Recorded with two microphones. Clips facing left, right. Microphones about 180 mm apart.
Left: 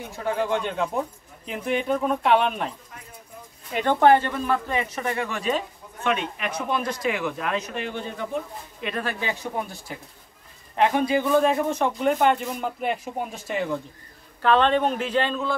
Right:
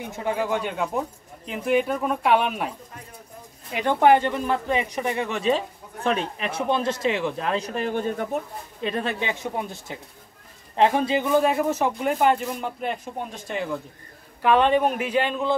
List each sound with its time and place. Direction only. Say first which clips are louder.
0.1 s speech: left 1 dB; 15° right (ahead or behind)
3.7 s speech: even; 10° right (ahead or behind)
6.0 s speech: right 1 dB; 35° right (ahead or behind)
8.8 s speech: right 2 dB; 25° right (ahead or behind)
11.3 s speech: right 2 dB; 5° right (ahead or behind)
14.4 s speech: right 1 dB; 10° right (ahead or behind)